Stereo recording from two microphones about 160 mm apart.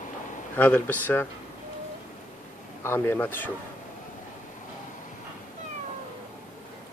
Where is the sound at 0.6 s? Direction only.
10° left (ahead or behind).